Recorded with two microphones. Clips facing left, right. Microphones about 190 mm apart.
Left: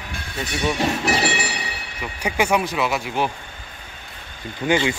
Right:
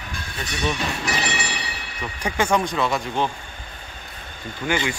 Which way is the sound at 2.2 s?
10° left (ahead or behind).